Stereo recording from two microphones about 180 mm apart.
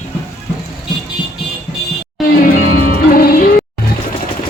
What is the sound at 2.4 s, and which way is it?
Music, 55° left (ahead or behind).